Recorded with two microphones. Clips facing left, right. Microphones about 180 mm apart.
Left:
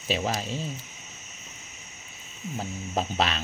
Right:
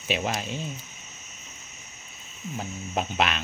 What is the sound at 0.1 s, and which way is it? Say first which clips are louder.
Speech: even; 35° left (ahead or behind).